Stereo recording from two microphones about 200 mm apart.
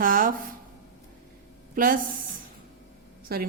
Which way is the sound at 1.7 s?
45° right (ahead or behind).